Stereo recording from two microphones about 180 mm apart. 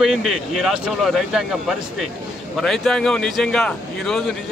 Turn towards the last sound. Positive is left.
turn(degrees=5)  # may be behind; listen again after turning